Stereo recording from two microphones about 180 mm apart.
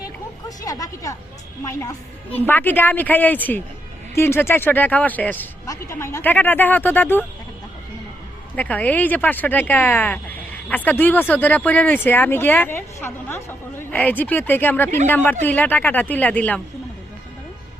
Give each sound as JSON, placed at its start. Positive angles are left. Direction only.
{"t": 0.0, "sound": "music", "side_deg": 20}
{"t": 2.3, "sound": "speech", "side_deg": 10}
{"t": 8.5, "sound": "speech", "side_deg": 10}